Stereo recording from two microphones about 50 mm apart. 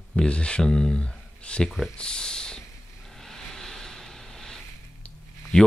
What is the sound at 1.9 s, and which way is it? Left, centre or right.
Speech, centre.